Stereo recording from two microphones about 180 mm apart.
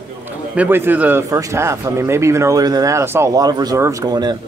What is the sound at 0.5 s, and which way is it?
Speech, 10° right (ahead or behind).